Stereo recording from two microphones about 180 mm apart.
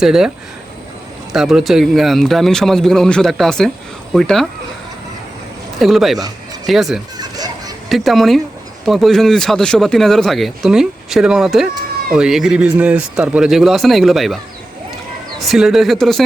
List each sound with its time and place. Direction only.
0.0 s speech: 5° right (ahead or behind)
1.3 s speech: centre (ahead or behind)
5.8 s speech: centre (ahead or behind)
7.2 s a sound: 20° right (ahead or behind)
7.9 s speech: centre (ahead or behind)
15.4 s speech: centre (ahead or behind)